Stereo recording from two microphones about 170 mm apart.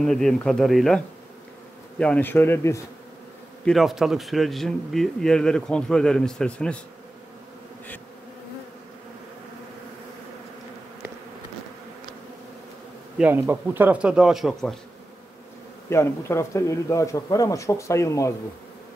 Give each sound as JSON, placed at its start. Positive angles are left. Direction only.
{"t": 0.0, "sound": "a man's voice", "side_deg": 0}
{"t": 3.6, "sound": "speech", "side_deg": 0}
{"t": 13.2, "sound": "speech", "side_deg": -10}
{"t": 15.9, "sound": "a man's voice", "side_deg": 15}